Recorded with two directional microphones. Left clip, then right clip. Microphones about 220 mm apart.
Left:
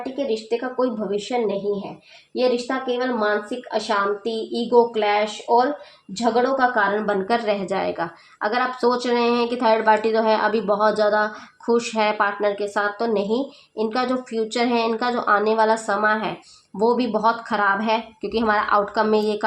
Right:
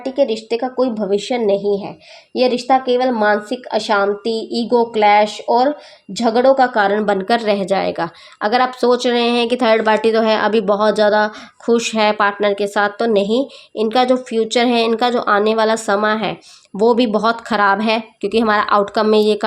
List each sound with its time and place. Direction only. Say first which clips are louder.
0.2 s a woman's voice: right 7 dB; 45° right (ahead or behind)